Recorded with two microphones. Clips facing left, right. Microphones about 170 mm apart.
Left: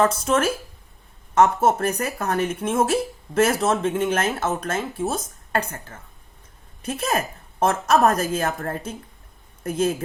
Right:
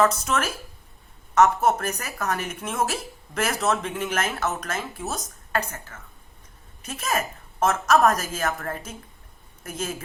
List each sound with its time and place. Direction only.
0.0 s a woman's voice: 30° left (ahead or behind)